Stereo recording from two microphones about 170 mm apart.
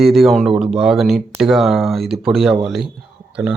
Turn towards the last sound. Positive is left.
turn(degrees=-5)  # may be behind; listen again after turning